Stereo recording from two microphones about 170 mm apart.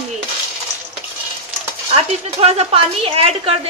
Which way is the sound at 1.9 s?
35° right (ahead or behind).